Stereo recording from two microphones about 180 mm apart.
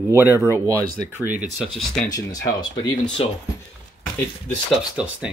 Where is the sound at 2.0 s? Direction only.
20° left (ahead or behind).